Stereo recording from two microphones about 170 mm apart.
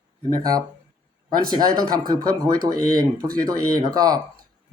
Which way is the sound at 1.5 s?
25° right (ahead or behind).